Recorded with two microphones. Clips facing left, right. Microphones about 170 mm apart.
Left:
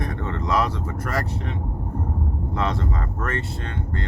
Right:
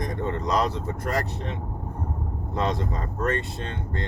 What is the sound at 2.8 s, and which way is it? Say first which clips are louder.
Speech: even; 20° right (ahead or behind).